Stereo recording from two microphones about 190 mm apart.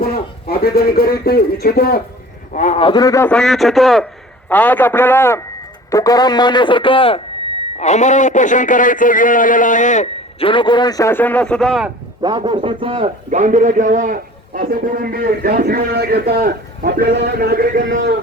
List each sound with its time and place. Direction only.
0.0 s speech: 55° left (ahead or behind)
2.5 s a man's voice: 40° left (ahead or behind); by 3.2 s 20° left (ahead or behind)
3.2 s a man's voice: 5° left (ahead or behind); by 10.5 s 40° left (ahead or behind)
10.5 s speech: 25° left (ahead or behind); by 11.9 s centre (ahead or behind)
12.2 s a man's voice: 25° right (ahead or behind); by 17.8 s 50° right (ahead or behind)